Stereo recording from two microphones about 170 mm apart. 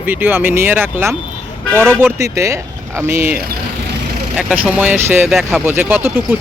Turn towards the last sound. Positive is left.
turn(degrees=-10)  # may be behind; listen again after turning